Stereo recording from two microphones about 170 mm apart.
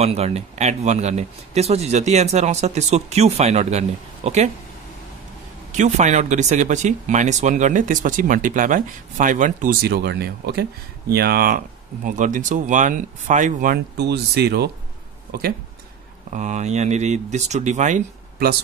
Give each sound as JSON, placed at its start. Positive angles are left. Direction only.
{"t": 0.0, "sound": "speech", "side_deg": -40}
{"t": 5.7, "sound": "speech", "side_deg": -45}
{"t": 13.9, "sound": "speech", "side_deg": -75}
{"t": 16.3, "sound": "speech", "side_deg": -45}